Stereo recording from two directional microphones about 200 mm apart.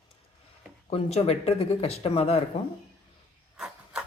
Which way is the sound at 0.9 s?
30° left (ahead or behind).